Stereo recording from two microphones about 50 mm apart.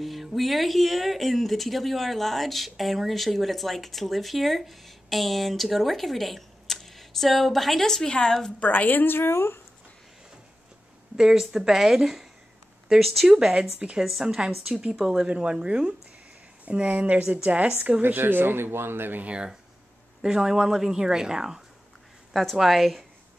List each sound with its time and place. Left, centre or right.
0.0 s a woman's voice: centre
8.5 s a woman's voice: left
11.1 s speech: centre
13.4 s speech: centre
13.9 s speech: centre
16.6 s speech: right
18.0 s speech: right
19.2 s speech: right
20.2 s speech: centre
22.3 s speech: centre